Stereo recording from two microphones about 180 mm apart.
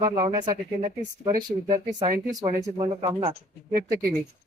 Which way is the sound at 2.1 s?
45° right (ahead or behind).